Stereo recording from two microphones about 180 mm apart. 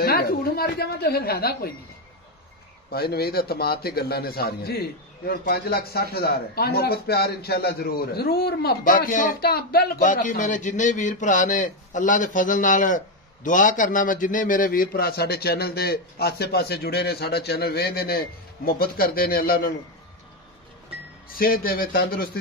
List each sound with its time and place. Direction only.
0.0 s a man's voice: 60° left (ahead or behind)
2.9 s a man's voice: 60° left (ahead or behind)
21.4 s a man's voice: 55° left (ahead or behind)